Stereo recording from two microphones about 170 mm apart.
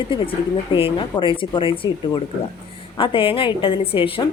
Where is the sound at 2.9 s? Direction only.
30° left (ahead or behind).